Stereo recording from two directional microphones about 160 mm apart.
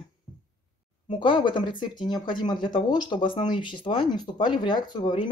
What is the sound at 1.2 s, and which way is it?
Speech, 30° left (ahead or behind).